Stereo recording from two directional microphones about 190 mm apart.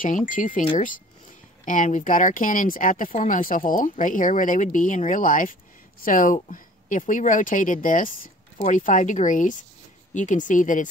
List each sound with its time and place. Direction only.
0.3 s speech: 40° left (ahead or behind)